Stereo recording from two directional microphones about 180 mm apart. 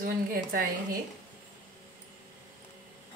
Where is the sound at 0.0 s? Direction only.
55° right (ahead or behind).